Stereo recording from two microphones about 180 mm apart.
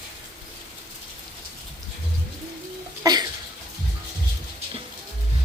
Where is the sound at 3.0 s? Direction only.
20° right (ahead or behind).